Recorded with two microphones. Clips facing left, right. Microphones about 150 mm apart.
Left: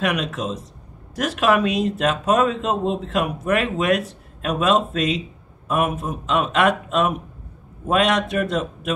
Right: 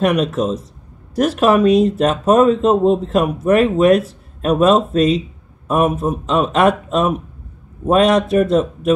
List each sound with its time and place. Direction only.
0.0 s speech: 35° right (ahead or behind)